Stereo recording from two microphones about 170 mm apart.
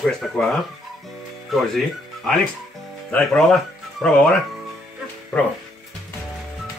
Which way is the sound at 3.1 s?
5° left (ahead or behind).